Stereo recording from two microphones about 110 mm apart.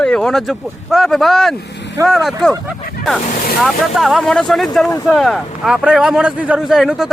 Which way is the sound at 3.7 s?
Centre (ahead or behind).